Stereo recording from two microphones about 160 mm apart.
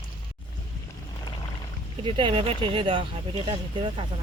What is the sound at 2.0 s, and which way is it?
Speech, 35° right (ahead or behind).